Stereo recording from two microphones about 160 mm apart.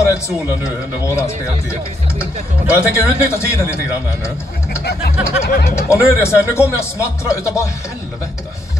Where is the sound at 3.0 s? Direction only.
15° left (ahead or behind).